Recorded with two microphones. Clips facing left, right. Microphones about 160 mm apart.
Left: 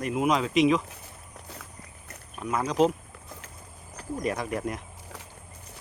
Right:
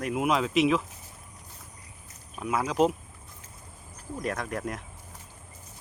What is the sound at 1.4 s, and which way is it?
Boat, 75° left (ahead or behind).